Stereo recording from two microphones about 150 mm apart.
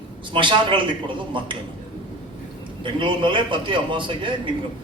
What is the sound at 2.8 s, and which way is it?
A man's voice, 35° right (ahead or behind).